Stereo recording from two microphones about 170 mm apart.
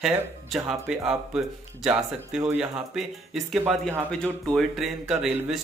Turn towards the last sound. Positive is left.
turn(degrees=-5)  # may be behind; listen again after turning